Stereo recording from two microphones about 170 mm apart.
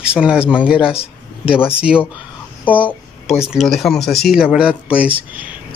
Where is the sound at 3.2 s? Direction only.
5° right (ahead or behind).